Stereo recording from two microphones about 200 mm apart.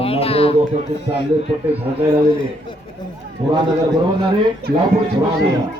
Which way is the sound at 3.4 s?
25° right (ahead or behind).